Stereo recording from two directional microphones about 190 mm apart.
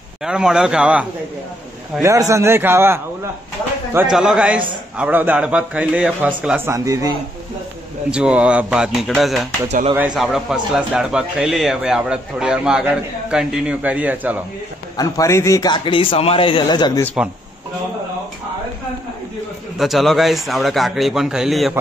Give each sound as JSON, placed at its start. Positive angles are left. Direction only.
{"t": 0.2, "sound": "a man's voice", "side_deg": -5}
{"t": 2.0, "sound": "a man's voice", "side_deg": -15}
{"t": 8.1, "sound": "a man's voice", "side_deg": -5}
{"t": 15.0, "sound": "a man's voice", "side_deg": 15}
{"t": 19.8, "sound": "a man's voice", "side_deg": 0}